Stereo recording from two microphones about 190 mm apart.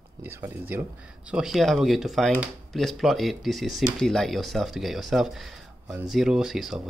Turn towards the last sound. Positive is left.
turn(degrees=0)  # may be behind; listen again after turning